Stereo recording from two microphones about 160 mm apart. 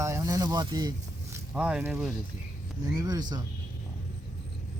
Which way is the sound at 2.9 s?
25° right (ahead or behind).